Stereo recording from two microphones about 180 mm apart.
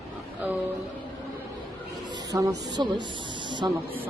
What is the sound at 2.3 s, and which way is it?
Speech, 20° right (ahead or behind).